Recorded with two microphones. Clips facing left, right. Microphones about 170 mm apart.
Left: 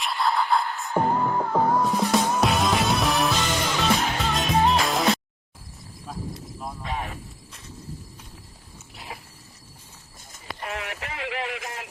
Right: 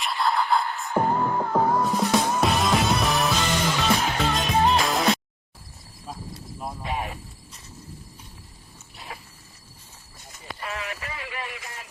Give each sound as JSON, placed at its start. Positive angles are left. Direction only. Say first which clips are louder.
{"t": 0.0, "sound": "music", "louder": "even", "side_deg": 0}
{"t": 6.6, "sound": "cricket", "louder": "right 2 dB", "side_deg": -15}
{"t": 10.6, "sound": "radio", "louder": "left 1 dB", "side_deg": 60}